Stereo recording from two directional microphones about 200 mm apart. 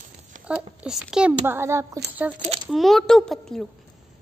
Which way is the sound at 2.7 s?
Centre (ahead or behind).